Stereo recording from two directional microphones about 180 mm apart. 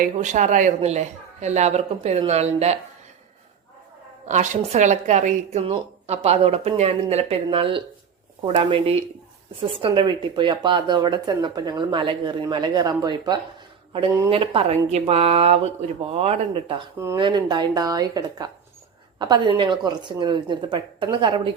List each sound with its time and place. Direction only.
0.0 s a woman's voice: 40° right (ahead or behind)
4.3 s a woman's voice: 40° right (ahead or behind)